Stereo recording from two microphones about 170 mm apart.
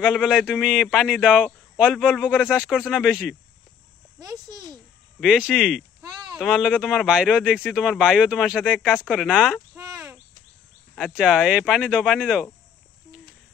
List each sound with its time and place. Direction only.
0.0 s speech: 5° right (ahead or behind)
4.2 s a child's voice: 20° right (ahead or behind)
5.2 s speech: centre (ahead or behind)
8.9 s speech: 5° left (ahead or behind)
9.8 s a sound: 15° right (ahead or behind)
11.0 s speech: 5° left (ahead or behind)